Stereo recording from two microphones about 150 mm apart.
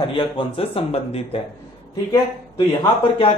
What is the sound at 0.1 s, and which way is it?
Speech, 35° left (ahead or behind).